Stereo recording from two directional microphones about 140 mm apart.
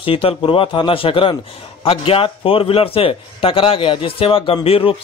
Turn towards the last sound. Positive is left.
turn(degrees=40)  # may be behind; listen again after turning